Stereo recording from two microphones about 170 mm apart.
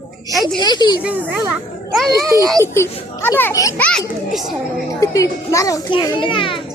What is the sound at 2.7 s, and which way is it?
A child's voice, 15° left (ahead or behind).